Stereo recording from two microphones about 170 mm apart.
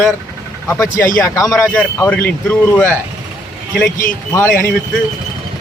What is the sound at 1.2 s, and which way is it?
Speech, 20° left (ahead or behind).